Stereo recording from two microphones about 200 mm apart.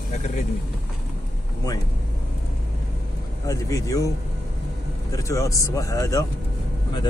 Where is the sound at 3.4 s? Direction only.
15° left (ahead or behind).